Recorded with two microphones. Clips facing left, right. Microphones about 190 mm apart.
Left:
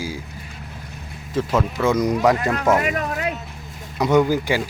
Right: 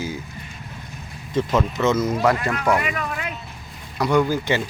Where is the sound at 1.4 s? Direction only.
10° left (ahead or behind).